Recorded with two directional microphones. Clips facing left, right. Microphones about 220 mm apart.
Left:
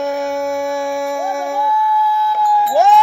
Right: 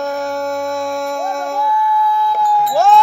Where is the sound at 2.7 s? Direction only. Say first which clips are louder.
Left 1 dB; 15° left (ahead or behind).